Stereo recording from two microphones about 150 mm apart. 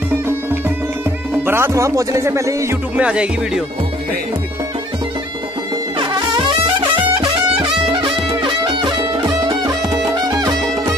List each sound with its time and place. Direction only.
1.4 s speech: 15° right (ahead or behind)
3.0 s music: 5° right (ahead or behind)
5.9 s music: 35° right (ahead or behind)